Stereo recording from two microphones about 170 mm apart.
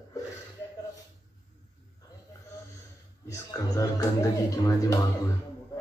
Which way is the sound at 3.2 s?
20° left (ahead or behind).